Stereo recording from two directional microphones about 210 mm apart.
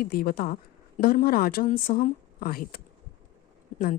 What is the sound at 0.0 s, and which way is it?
A woman's voice, 45° left (ahead or behind).